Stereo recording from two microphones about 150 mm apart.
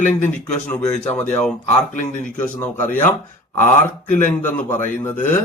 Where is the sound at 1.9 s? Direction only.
60° left (ahead or behind).